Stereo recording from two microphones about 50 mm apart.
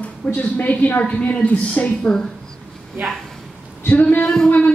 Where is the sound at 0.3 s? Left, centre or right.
Left.